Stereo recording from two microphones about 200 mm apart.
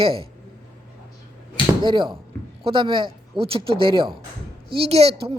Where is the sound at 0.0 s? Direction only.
25° right (ahead or behind).